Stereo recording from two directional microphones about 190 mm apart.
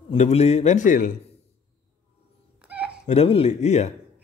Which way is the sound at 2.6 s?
5° right (ahead or behind).